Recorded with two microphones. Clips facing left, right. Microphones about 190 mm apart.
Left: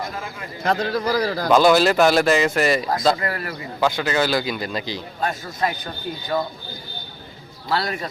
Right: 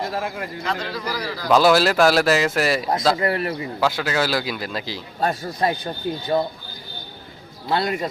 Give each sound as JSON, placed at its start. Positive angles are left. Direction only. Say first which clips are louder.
{"t": 0.6, "sound": "a man's voice", "louder": "left 8 dB", "side_deg": 50}
{"t": 1.5, "sound": "speech", "louder": "even", "side_deg": 0}
{"t": 3.2, "sound": "a man's voice", "louder": "right 5 dB", "side_deg": -25}
{"t": 3.8, "sound": "speech", "louder": "left 2 dB", "side_deg": -5}
{"t": 5.2, "sound": "speech", "louder": "right 3 dB", "side_deg": -35}
{"t": 7.7, "sound": "a man's voice", "louder": "right 2 dB", "side_deg": -20}